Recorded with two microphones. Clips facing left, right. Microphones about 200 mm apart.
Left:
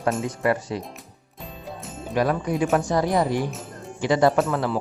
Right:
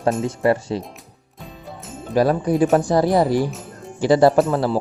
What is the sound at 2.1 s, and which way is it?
Speech, 35° right (ahead or behind).